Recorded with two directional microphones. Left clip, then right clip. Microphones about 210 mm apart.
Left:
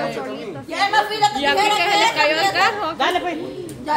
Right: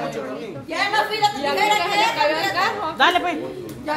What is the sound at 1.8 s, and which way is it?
Chatter, 60° left (ahead or behind).